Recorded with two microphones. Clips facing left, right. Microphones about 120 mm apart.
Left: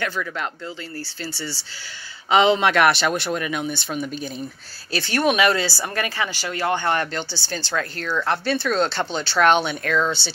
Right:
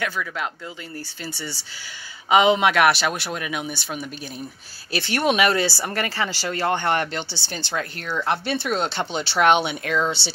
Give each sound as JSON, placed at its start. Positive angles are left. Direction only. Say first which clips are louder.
{"t": 0.0, "sound": "speech", "louder": "left 1 dB", "side_deg": -5}
{"t": 4.9, "sound": "speech", "louder": "left 1 dB", "side_deg": -25}